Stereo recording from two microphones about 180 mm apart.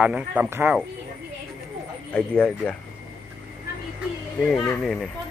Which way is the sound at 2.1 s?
5° left (ahead or behind).